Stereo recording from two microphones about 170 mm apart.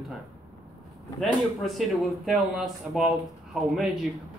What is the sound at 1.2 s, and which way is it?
Speech, centre (ahead or behind).